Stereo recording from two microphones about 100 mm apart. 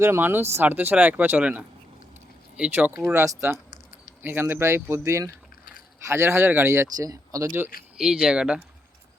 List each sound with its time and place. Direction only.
0.0 s speech: 25° right (ahead or behind)
6.8 s speech: 40° right (ahead or behind)
7.4 s speech: 25° right (ahead or behind)
7.9 s speech: 5° right (ahead or behind)